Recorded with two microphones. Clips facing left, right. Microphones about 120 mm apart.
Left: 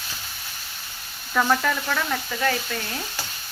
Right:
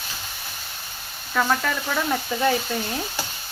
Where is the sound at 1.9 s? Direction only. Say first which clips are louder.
Right 3 dB; 20° right (ahead or behind).